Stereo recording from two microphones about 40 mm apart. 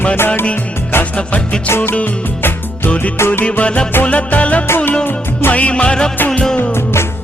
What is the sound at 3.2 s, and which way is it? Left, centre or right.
Music, left.